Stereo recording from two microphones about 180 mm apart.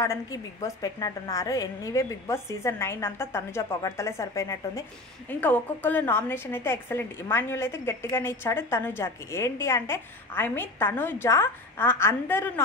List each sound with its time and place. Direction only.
0.0 s a woman's voice: 20° left (ahead or behind)